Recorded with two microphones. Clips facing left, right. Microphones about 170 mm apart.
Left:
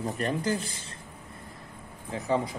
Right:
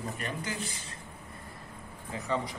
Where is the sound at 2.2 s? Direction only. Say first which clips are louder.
Left 5 dB; 25° left (ahead or behind).